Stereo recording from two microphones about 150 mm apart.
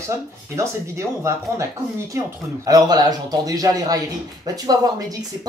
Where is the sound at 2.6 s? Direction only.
25° right (ahead or behind).